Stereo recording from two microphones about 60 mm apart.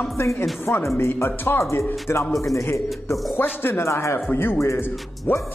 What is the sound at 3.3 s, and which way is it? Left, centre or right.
Speech, left.